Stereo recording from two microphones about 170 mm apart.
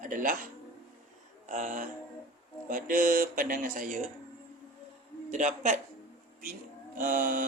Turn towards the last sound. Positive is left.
turn(degrees=-55)  # may be behind; listen again after turning